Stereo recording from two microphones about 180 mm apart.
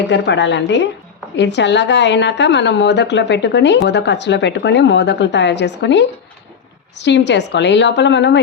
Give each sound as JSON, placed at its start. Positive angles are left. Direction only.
{"t": 0.1, "sound": "a woman's voice", "side_deg": 80}